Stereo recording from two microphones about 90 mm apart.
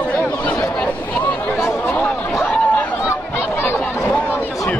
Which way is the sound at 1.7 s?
10° left (ahead or behind).